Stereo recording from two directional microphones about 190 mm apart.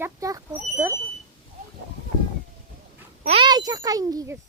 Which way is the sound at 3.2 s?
25° right (ahead or behind).